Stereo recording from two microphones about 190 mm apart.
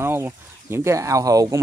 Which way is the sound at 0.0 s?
15° right (ahead or behind).